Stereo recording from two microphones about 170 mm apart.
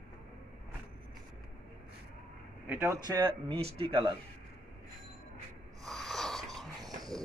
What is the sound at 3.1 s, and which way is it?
Speech, 30° right (ahead or behind).